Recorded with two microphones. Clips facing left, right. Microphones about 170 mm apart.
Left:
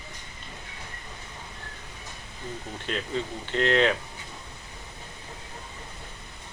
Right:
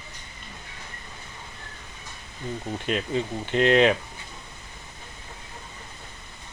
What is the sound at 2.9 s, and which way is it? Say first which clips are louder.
Speech: right 4 dB; 15° right (ahead or behind).